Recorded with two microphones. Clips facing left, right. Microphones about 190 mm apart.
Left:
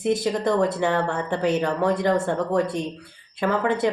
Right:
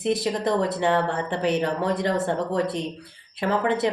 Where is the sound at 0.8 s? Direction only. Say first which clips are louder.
Even; 20° right (ahead or behind).